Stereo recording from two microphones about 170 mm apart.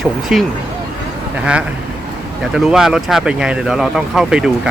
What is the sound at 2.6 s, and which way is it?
Speech, centre (ahead or behind).